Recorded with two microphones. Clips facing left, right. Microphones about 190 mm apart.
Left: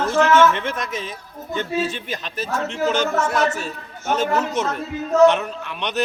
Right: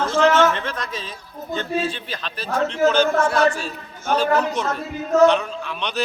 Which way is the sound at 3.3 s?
20° left (ahead or behind).